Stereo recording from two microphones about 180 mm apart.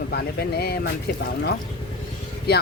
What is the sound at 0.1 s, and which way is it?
Speech, 60° left (ahead or behind).